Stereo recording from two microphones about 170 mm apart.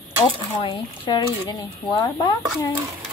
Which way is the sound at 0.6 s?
25° left (ahead or behind).